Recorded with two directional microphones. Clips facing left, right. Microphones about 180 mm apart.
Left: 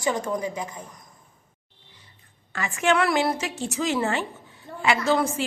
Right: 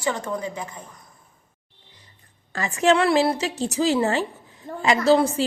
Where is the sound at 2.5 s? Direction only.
35° right (ahead or behind).